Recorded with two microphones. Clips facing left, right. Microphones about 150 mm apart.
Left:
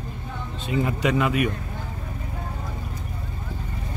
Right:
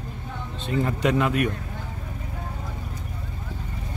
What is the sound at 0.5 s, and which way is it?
Speech, 5° left (ahead or behind).